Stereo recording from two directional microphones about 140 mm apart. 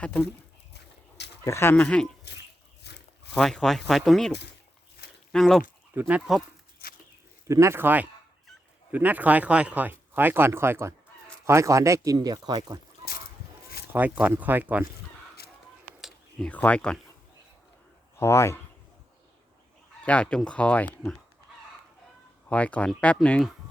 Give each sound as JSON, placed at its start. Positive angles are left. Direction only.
{"t": 1.5, "sound": "speech", "side_deg": 20}
{"t": 1.7, "sound": "speech", "side_deg": 10}
{"t": 3.3, "sound": "speech", "side_deg": 5}
{"t": 5.0, "sound": "a sound", "side_deg": 90}
{"t": 5.3, "sound": "speech", "side_deg": 0}
{"t": 5.9, "sound": "speech", "side_deg": -10}
{"t": 7.4, "sound": "speech", "side_deg": -20}
{"t": 13.9, "sound": "speech", "side_deg": -10}
{"t": 15.4, "sound": "a sound", "side_deg": 90}
{"t": 16.0, "sound": "whispering", "side_deg": 0}
{"t": 16.5, "sound": "speech", "side_deg": 10}
{"t": 18.2, "sound": "speech", "side_deg": 20}
{"t": 20.1, "sound": "speech", "side_deg": 10}
{"t": 22.4, "sound": "speech", "side_deg": 10}